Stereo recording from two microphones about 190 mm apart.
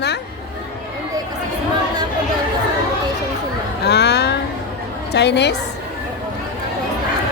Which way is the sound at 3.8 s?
60° left (ahead or behind).